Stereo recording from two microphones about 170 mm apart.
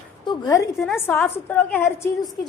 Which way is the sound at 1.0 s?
10° left (ahead or behind).